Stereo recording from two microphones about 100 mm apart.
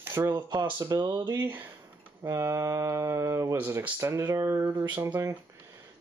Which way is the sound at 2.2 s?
30° right (ahead or behind).